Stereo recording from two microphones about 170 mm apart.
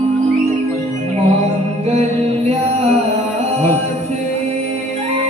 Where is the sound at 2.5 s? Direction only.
40° right (ahead or behind).